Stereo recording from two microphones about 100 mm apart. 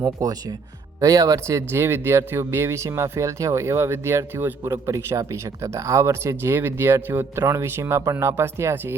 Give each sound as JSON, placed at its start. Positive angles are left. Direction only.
{"t": 0.0, "sound": "speech", "side_deg": -35}